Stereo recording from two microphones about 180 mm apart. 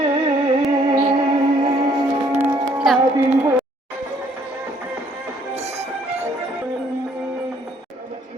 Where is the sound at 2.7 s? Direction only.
Centre (ahead or behind).